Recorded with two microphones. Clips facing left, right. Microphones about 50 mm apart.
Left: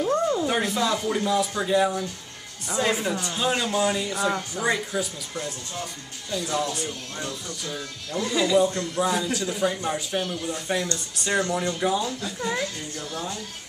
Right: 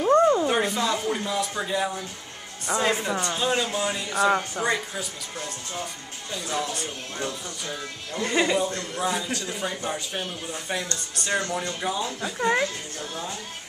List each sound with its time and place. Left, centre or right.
0.1 s a sound: right
0.5 s speech: centre
7.2 s speech: centre
8.3 s speech: right
8.5 s speech: centre
10.2 s speech: centre
11.1 s speech: centre
12.0 s speech: centre